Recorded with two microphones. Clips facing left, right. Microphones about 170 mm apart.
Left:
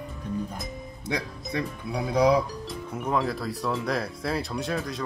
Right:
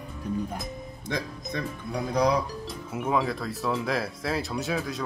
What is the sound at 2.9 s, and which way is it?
Speech, 5° right (ahead or behind).